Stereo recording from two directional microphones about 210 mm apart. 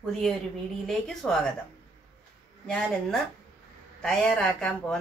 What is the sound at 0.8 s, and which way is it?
Speech, centre (ahead or behind).